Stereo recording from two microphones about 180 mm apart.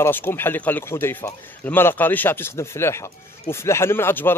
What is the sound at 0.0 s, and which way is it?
A man's voice, 10° left (ahead or behind).